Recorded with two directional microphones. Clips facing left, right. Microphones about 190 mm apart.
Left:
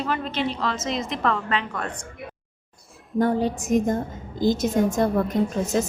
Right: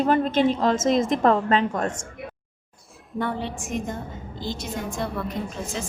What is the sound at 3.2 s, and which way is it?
A woman's voice, 40° left (ahead or behind).